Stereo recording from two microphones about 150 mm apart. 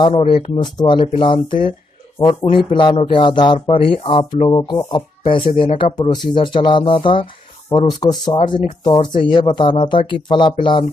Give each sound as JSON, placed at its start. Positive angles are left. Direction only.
{"t": 0.2, "sound": "speech", "side_deg": 35}
{"t": 4.5, "sound": "speech", "side_deg": 25}